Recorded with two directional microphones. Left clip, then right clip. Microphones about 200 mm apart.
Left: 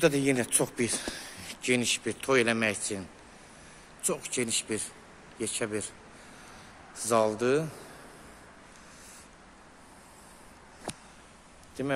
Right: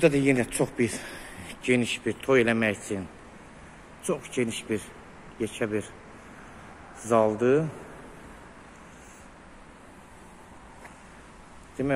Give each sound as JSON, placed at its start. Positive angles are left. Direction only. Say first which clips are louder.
{"t": 0.0, "sound": "speech", "louder": "right 3 dB", "side_deg": 10}
{"t": 7.0, "sound": "speech", "louder": "right 3 dB", "side_deg": 15}
{"t": 11.8, "sound": "speech", "louder": "right 4 dB", "side_deg": 10}